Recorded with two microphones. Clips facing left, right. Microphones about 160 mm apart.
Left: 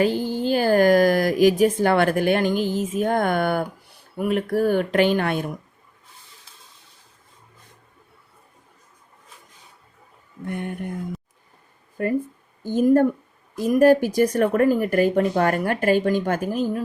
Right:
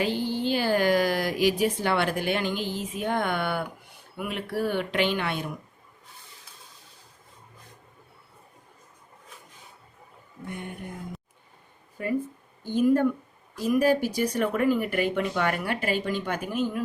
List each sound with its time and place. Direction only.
0.0 s speech: 45° left (ahead or behind)
10.4 s speech: 55° left (ahead or behind)
12.6 s speech: 45° left (ahead or behind)